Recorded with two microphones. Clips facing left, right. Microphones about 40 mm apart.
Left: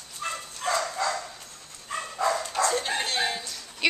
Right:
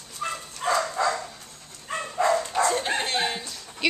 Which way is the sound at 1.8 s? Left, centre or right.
Right.